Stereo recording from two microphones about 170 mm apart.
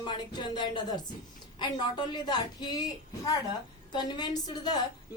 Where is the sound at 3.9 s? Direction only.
25° left (ahead or behind).